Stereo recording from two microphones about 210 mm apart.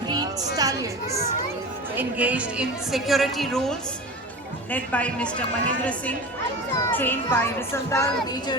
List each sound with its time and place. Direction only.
0.1 s a woman's voice: 20° right (ahead or behind); by 8.1 s 15° left (ahead or behind)